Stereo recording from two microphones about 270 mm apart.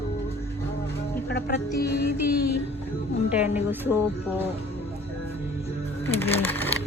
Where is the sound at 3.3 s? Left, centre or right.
Centre.